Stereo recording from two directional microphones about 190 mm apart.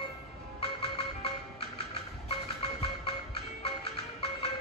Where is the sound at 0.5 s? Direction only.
30° left (ahead or behind).